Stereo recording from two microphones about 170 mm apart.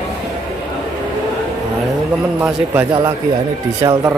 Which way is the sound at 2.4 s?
10° right (ahead or behind).